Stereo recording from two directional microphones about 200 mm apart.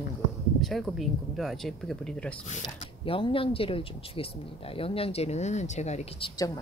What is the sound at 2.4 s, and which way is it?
Speech, 35° left (ahead or behind).